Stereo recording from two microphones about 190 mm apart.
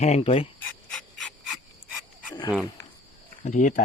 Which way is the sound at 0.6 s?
5° left (ahead or behind).